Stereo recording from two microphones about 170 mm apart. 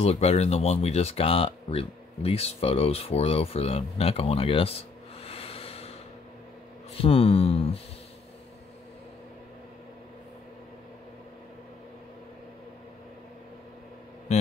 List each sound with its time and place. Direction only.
0.0 s speech: 40° left (ahead or behind)
7.0 s speech: 35° left (ahead or behind)
14.3 s a sound: 40° left (ahead or behind)